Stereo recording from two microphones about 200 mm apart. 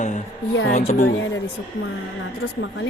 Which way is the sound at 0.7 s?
35° left (ahead or behind).